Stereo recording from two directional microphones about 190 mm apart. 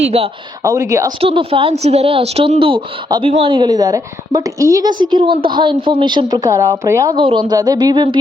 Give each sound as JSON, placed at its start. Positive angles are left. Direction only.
{"t": 0.1, "sound": "a woman's voice", "side_deg": -30}
{"t": 0.6, "sound": "a woman's voice", "side_deg": -15}
{"t": 1.2, "sound": "a woman's voice", "side_deg": -30}